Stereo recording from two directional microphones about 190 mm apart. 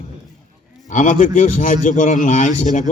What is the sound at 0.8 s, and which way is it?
A man's voice, 45° left (ahead or behind).